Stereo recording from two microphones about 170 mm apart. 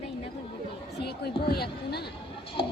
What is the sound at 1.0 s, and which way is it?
Speech, 70° left (ahead or behind).